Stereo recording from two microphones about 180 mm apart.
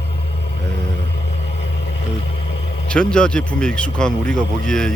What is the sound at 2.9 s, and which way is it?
Speech, 5° left (ahead or behind).